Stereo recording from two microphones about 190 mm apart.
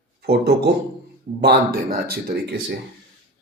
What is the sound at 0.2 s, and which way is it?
Speech, 60° right (ahead or behind).